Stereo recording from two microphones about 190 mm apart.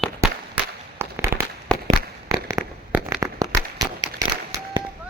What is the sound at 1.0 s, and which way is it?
Fireworks, 10° right (ahead or behind).